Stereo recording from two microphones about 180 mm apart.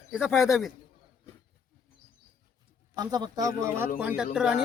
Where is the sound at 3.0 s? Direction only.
20° right (ahead or behind); by 4.6 s centre (ahead or behind).